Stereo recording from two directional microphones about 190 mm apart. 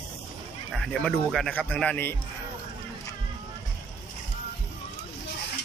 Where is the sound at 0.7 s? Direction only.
5° left (ahead or behind).